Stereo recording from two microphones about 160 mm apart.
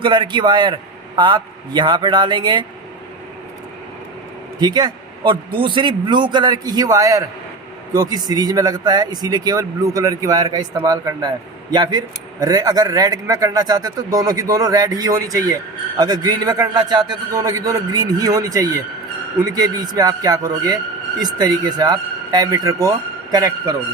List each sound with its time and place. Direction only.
0.0 s a man's voice: 30° right (ahead or behind)
4.6 s a man's voice: 25° right (ahead or behind)